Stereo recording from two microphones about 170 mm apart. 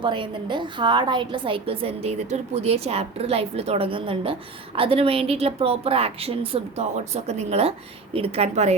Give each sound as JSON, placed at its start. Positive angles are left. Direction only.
{"t": 0.0, "sound": "a woman's voice", "side_deg": -30}